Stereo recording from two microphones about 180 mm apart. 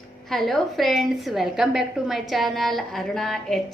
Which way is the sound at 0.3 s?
Centre (ahead or behind).